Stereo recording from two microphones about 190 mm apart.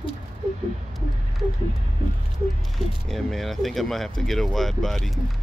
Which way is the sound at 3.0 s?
Centre (ahead or behind).